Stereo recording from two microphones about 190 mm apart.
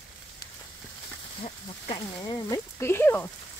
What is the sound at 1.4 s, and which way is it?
Speech, 25° left (ahead or behind).